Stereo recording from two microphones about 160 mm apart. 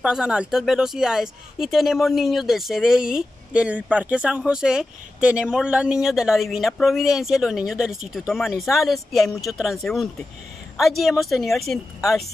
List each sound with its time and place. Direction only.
0.0 s speech: 5° right (ahead or behind)